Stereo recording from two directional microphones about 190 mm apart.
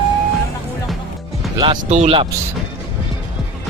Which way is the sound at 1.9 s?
35° right (ahead or behind).